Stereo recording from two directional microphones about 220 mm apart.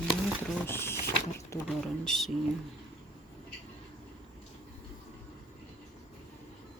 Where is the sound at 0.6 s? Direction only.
10° left (ahead or behind).